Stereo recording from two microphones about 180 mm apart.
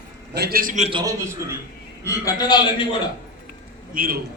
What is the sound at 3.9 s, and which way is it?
Speech, 50° right (ahead or behind).